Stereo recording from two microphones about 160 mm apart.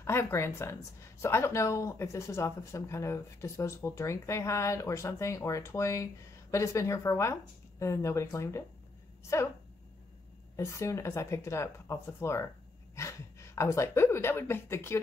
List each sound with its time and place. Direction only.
0.0 s speech: 15° left (ahead or behind)
10.5 s speech: 20° left (ahead or behind)
13.6 s speech: 20° left (ahead or behind)